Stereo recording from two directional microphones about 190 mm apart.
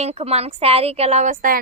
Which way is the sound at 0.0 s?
35° right (ahead or behind).